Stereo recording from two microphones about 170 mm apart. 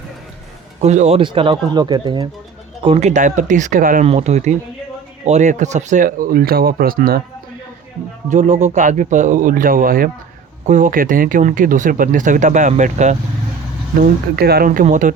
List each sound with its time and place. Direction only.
0.8 s speech: 40° right (ahead or behind); by 2.2 s 25° right (ahead or behind)
2.8 s speech: 35° right (ahead or behind); by 4.0 s 50° right (ahead or behind)
4.0 s speech: 40° right (ahead or behind); by 7.2 s 60° right (ahead or behind)
8.3 s speech: 45° right (ahead or behind)
14.0 s speech: 65° right (ahead or behind); by 15.1 s 50° right (ahead or behind)